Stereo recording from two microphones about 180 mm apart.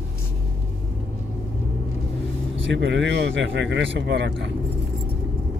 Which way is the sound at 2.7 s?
80° right.